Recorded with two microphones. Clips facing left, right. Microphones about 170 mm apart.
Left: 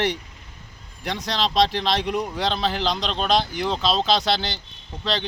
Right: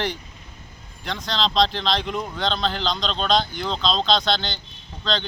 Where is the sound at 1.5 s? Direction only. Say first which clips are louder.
Left 1 dB; 5° left (ahead or behind).